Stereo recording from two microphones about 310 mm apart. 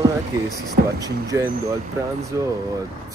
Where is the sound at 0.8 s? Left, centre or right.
Right.